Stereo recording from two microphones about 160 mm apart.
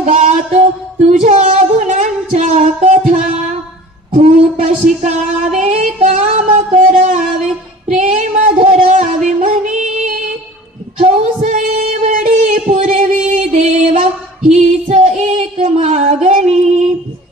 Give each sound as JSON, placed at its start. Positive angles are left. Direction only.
{"t": 0.0, "sound": "female singing", "side_deg": -45}
{"t": 4.6, "sound": "music", "side_deg": -45}
{"t": 7.9, "sound": "female singing", "side_deg": -50}
{"t": 8.9, "sound": "music", "side_deg": -55}
{"t": 11.0, "sound": "female singing", "side_deg": -55}